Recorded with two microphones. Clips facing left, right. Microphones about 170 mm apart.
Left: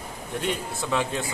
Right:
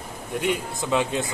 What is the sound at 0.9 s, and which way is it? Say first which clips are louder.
Speech: right 3 dB; 20° right (ahead or behind).